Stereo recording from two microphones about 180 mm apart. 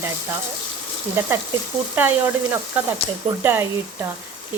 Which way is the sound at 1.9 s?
10° right (ahead or behind).